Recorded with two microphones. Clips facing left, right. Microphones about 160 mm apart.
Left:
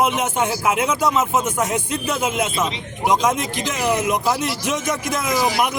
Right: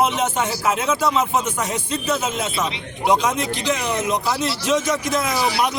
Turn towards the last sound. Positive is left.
turn(degrees=15)  # may be behind; listen again after turning